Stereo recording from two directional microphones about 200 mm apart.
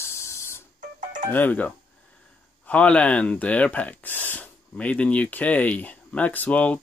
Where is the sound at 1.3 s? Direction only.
10° left (ahead or behind).